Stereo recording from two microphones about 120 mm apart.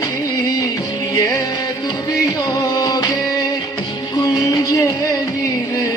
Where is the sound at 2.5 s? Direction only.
35° left (ahead or behind).